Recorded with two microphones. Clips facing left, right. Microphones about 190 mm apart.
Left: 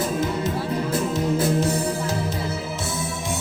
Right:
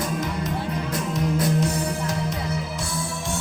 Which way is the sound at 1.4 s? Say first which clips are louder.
Left 1 dB; 30° left (ahead or behind).